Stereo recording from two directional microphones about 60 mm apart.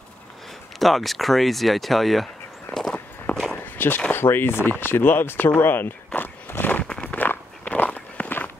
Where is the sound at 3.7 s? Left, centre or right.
Left.